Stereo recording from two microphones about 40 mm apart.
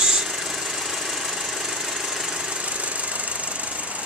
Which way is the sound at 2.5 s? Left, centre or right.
Right.